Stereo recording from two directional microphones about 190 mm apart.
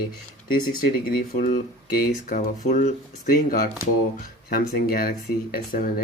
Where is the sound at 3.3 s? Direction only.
50° left (ahead or behind).